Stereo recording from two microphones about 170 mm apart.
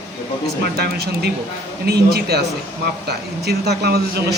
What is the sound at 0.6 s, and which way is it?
Speech, 70° right (ahead or behind).